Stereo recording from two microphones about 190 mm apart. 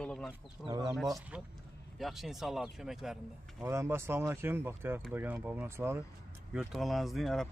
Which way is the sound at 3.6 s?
15° right (ahead or behind).